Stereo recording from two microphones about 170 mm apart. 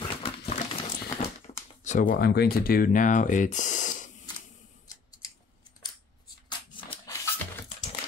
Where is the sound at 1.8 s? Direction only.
50° left (ahead or behind).